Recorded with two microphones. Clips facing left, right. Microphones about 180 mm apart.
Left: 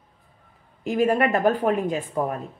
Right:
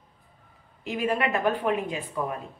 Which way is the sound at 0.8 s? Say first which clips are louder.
Left 6 dB; 45° left (ahead or behind).